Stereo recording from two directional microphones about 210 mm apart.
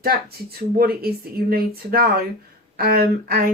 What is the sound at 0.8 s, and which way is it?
Speech, 45° right (ahead or behind).